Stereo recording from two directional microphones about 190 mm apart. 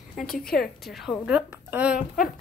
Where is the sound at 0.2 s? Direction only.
5° left (ahead or behind).